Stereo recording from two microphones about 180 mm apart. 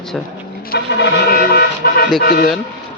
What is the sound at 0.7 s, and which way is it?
Music, 60° left (ahead or behind).